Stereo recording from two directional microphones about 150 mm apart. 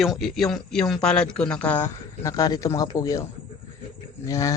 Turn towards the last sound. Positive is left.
turn(degrees=20)  # may be behind; listen again after turning